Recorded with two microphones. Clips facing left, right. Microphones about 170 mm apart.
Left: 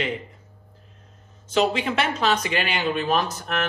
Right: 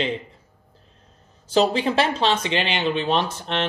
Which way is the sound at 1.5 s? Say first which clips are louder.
Right 3 dB; 35° right (ahead or behind).